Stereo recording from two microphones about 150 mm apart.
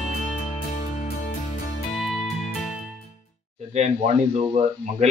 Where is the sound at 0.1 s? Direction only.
55° left (ahead or behind).